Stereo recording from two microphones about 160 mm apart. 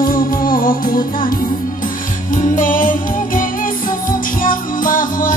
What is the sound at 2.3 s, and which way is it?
Music, 55° left (ahead or behind).